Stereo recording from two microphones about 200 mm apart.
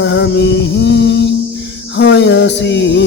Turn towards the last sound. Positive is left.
turn(degrees=60)  # may be behind; listen again after turning